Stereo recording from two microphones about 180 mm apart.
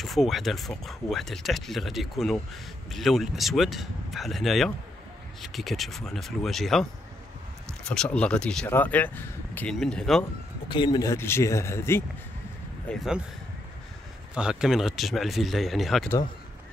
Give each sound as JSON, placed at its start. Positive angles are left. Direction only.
{"t": 0.0, "sound": "speech", "side_deg": 0}
{"t": 10.7, "sound": "speech", "side_deg": 25}
{"t": 12.8, "sound": "speech", "side_deg": 0}
{"t": 14.3, "sound": "speech", "side_deg": -5}